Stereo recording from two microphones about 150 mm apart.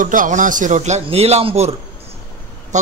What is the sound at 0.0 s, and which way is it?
A man's voice, 60° right (ahead or behind).